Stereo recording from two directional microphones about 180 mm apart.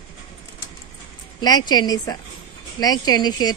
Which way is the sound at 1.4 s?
25° left (ahead or behind).